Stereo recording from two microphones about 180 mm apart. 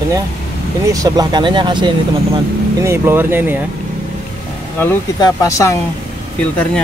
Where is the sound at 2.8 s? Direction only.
15° right (ahead or behind).